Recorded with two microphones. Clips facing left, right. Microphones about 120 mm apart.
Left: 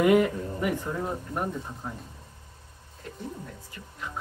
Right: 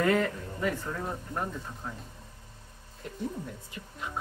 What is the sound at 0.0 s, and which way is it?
Speech, 15° left (ahead or behind).